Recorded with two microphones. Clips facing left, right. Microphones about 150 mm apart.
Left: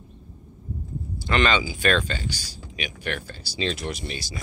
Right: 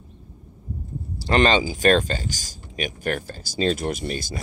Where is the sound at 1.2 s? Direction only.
35° right (ahead or behind).